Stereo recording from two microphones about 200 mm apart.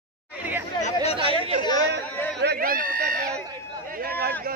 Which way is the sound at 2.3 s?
55° right (ahead or behind).